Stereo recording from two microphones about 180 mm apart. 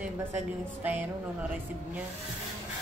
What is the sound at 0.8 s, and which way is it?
Speech, 10° right (ahead or behind).